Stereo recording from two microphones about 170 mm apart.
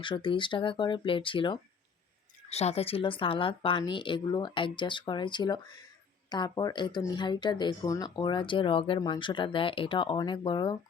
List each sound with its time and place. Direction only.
0.0 s speech: 30° left (ahead or behind)